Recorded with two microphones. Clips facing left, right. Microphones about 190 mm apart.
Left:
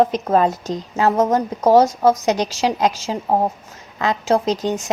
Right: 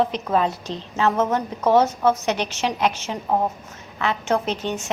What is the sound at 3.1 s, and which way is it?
Speech, 25° left (ahead or behind).